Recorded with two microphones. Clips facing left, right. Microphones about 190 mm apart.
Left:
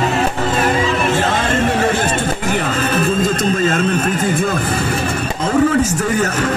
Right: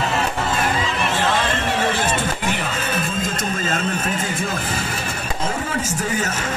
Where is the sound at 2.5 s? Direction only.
55° left (ahead or behind).